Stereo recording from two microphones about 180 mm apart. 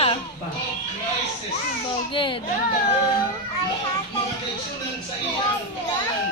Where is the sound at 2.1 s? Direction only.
25° left (ahead or behind).